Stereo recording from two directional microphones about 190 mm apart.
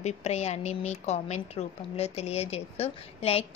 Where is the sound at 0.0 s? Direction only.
35° left (ahead or behind).